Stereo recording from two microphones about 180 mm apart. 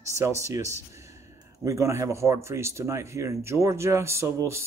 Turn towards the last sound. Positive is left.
turn(degrees=-15)  # may be behind; listen again after turning